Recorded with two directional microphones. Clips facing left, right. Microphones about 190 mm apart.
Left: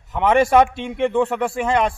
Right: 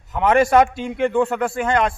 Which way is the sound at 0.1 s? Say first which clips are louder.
Even; centre (ahead or behind).